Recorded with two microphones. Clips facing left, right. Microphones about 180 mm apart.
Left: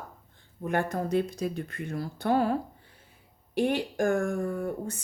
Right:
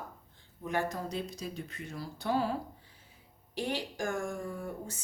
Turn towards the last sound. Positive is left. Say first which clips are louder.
# left 8 dB
turn(degrees=60)  # may be behind; listen again after turning